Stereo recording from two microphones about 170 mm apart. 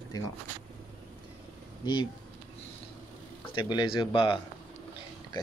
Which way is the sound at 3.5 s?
25° left (ahead or behind).